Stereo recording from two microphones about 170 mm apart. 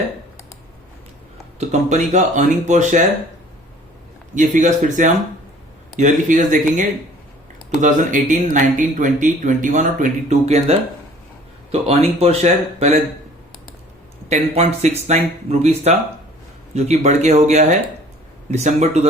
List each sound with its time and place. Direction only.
1.5 s speech: 45° right (ahead or behind)
4.4 s speech: 50° right (ahead or behind)
14.3 s speech: 40° right (ahead or behind)